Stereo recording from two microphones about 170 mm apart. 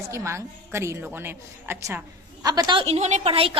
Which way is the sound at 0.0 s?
15° right (ahead or behind).